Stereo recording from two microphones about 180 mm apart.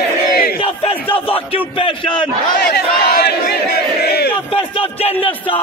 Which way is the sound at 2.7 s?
60° left (ahead or behind).